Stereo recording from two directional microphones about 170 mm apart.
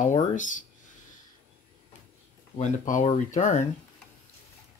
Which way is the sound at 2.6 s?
45° left (ahead or behind).